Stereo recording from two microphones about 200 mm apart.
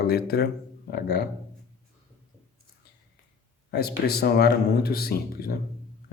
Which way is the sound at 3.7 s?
50° left (ahead or behind).